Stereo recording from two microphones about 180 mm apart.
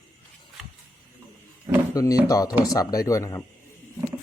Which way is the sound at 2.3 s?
20° left (ahead or behind).